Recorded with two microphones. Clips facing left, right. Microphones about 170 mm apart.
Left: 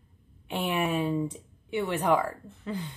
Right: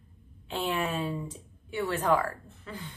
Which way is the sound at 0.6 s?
15° left (ahead or behind).